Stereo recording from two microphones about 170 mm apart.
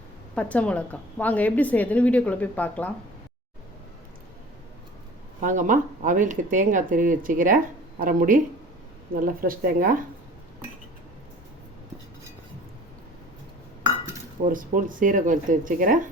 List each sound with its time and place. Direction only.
0.3 s a woman's voice: 10° left (ahead or behind)
5.4 s speech: 50° right (ahead or behind)
14.4 s speech: 50° right (ahead or behind)